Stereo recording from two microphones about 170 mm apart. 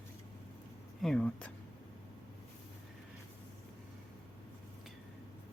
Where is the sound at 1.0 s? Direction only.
5° left (ahead or behind).